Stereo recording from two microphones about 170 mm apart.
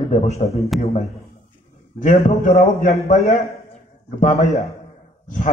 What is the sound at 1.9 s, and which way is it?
A man's voice, 50° left (ahead or behind).